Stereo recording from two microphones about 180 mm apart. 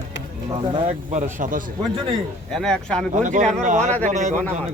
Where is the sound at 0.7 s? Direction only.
40° right (ahead or behind).